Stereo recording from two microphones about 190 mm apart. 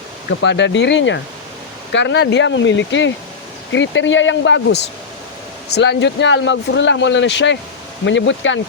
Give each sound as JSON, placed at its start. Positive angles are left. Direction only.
{"t": 0.3, "sound": "speech", "side_deg": 70}
{"t": 5.6, "sound": "speech", "side_deg": 60}